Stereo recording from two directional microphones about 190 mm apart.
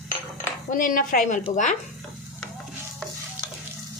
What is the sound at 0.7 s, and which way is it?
Speech, 45° left (ahead or behind).